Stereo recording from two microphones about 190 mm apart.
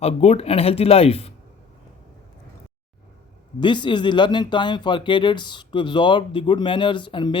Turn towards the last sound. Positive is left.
turn(degrees=25)  # may be behind; listen again after turning